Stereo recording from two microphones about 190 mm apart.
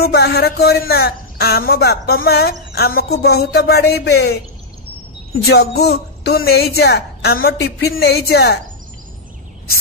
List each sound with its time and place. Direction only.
0.0 s speech: 55° left (ahead or behind)